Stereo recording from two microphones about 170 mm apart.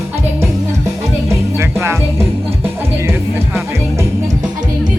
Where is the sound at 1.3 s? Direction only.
15° right (ahead or behind).